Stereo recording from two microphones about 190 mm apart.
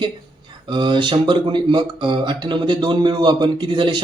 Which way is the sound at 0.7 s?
25° right (ahead or behind).